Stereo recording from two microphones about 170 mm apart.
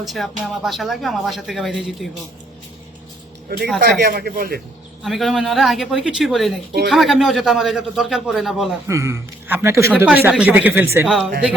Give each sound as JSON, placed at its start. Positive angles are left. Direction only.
{"t": 0.0, "sound": "speech", "side_deg": 0}
{"t": 3.8, "sound": "speech", "side_deg": -70}
{"t": 5.0, "sound": "speech", "side_deg": 0}
{"t": 8.9, "sound": "speech", "side_deg": -15}